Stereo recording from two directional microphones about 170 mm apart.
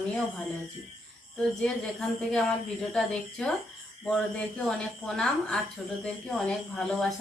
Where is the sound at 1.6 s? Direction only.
5° left (ahead or behind).